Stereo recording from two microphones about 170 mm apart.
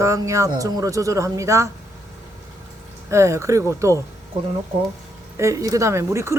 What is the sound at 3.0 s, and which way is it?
Speech, 15° right (ahead or behind).